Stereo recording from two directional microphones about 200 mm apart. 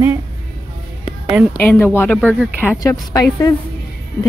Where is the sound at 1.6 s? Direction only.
10° left (ahead or behind).